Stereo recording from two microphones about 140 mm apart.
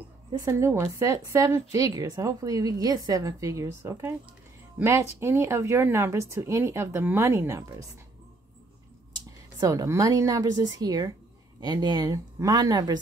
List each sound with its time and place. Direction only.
0.3 s a woman's voice: 20° right (ahead or behind)
9.6 s a woman's voice: 25° right (ahead or behind)